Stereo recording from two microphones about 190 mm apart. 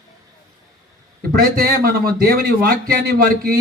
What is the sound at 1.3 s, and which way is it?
A man's voice, 55° right (ahead or behind).